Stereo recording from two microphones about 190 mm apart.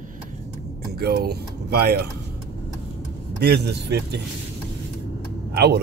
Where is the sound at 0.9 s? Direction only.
55° right (ahead or behind).